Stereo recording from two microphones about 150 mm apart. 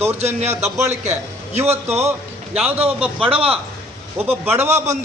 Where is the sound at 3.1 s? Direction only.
35° right (ahead or behind).